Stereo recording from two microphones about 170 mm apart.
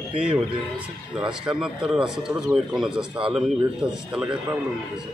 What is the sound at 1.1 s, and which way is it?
Speech, 5° right (ahead or behind).